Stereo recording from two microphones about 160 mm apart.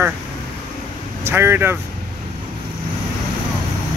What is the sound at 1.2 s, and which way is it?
Speech, 15° right (ahead or behind).